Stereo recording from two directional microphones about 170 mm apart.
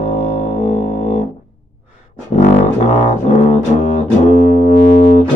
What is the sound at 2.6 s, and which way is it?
Music, 40° left (ahead or behind).